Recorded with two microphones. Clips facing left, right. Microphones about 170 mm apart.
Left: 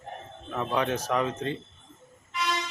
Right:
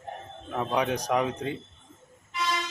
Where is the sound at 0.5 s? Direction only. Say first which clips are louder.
Right 1 dB; 15° right (ahead or behind).